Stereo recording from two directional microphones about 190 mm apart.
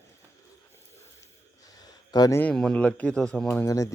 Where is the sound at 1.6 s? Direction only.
20° left (ahead or behind).